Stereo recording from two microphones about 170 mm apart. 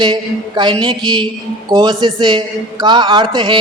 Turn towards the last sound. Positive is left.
turn(degrees=-30)  # may be behind; listen again after turning